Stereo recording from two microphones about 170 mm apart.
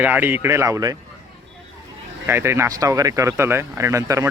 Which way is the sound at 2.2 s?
15° right (ahead or behind).